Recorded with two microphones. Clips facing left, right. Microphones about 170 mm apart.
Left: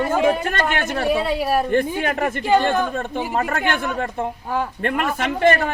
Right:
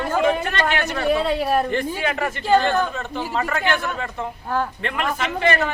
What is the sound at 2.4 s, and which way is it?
Speech, 15° left (ahead or behind).